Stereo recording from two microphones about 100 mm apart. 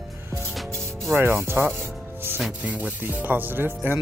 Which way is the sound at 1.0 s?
25° right (ahead or behind).